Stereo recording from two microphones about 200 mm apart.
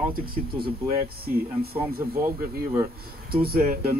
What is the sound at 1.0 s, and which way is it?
Speech, 50° right (ahead or behind).